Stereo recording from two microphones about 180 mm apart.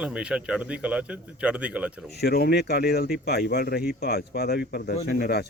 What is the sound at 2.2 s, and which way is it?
Speech, 60° left (ahead or behind).